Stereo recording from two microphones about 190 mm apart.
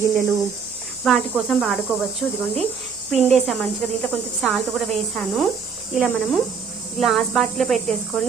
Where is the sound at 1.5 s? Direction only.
Centre (ahead or behind).